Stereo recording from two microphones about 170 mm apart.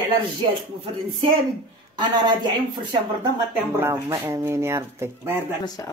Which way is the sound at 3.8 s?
15° right (ahead or behind).